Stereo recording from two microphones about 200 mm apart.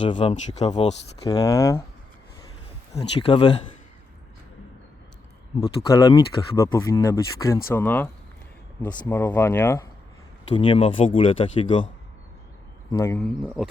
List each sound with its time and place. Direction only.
0.0 s speech: 25° left (ahead or behind)
1.3 s speech: 15° left (ahead or behind)
2.9 s speech: 25° left (ahead or behind)
5.5 s speech: 20° left (ahead or behind)
10.5 s speech: 25° left (ahead or behind)
12.9 s speech: 15° left (ahead or behind)